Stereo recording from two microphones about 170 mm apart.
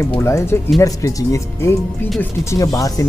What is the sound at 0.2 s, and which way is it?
Speech, 15° left (ahead or behind).